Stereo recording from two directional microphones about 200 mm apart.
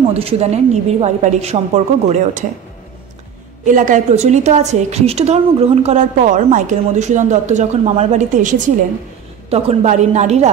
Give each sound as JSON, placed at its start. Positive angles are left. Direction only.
{"t": 0.1, "sound": "a woman's voice", "side_deg": -30}
{"t": 3.6, "sound": "a woman's voice", "side_deg": -40}